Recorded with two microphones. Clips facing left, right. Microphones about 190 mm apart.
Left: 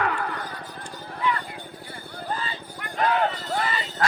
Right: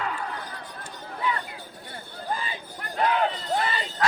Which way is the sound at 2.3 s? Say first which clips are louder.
Even; 15° right (ahead or behind).